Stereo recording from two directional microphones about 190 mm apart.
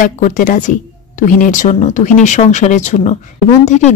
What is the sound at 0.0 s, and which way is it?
Speech, 40° left (ahead or behind).